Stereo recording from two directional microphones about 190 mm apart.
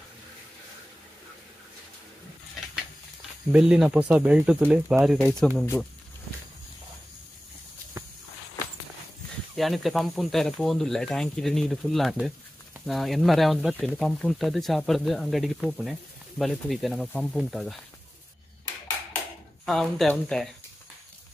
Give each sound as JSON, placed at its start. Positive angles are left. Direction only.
{"t": 3.5, "sound": "speech", "side_deg": -5}
{"t": 9.6, "sound": "speech", "side_deg": 0}
{"t": 19.6, "sound": "speech", "side_deg": 0}